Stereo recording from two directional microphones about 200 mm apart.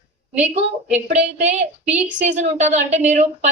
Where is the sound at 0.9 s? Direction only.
35° right (ahead or behind).